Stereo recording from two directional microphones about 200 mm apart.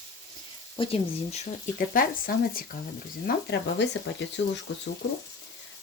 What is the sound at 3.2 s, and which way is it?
Speech, 55° left (ahead or behind).